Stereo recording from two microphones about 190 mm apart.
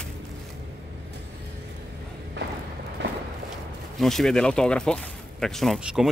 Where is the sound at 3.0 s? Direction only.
70° right (ahead or behind).